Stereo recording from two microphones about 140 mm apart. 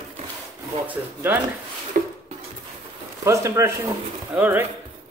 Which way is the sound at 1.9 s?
85° right.